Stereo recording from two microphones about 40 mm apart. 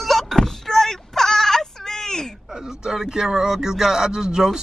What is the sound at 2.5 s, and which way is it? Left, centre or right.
Speech, centre.